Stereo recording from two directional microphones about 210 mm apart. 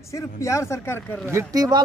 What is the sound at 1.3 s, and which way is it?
Speech, 15° right (ahead or behind).